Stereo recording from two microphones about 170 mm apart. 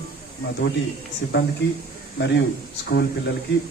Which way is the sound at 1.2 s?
90° left.